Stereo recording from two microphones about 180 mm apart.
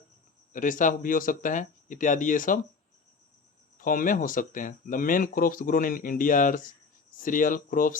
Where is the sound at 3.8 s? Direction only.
50° left (ahead or behind).